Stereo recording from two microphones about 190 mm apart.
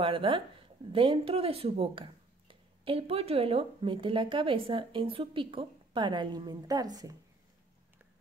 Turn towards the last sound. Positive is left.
turn(degrees=-20)  # may be behind; listen again after turning